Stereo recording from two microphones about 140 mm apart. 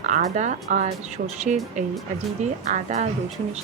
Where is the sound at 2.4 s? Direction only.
60° right (ahead or behind).